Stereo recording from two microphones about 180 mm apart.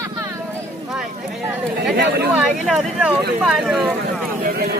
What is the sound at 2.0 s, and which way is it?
Speech, 65° right (ahead or behind).